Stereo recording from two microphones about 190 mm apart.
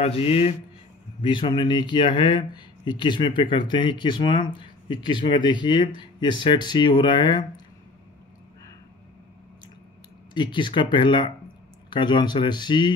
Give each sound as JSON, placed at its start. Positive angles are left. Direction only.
{"t": 0.0, "sound": "speech", "side_deg": 30}
{"t": 10.3, "sound": "speech", "side_deg": 25}